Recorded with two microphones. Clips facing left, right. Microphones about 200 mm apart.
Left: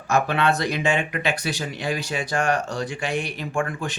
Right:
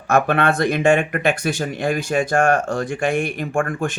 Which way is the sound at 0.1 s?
55° right (ahead or behind).